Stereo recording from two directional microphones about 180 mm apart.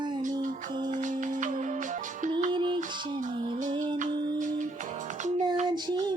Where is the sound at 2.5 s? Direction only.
30° right (ahead or behind).